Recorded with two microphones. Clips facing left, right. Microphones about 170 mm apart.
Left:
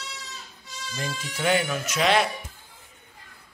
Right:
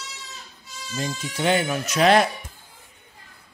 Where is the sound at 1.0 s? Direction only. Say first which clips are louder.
Right 4 dB; 25° right (ahead or behind).